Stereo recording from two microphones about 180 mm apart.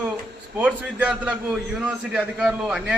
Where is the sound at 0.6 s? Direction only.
5° right (ahead or behind).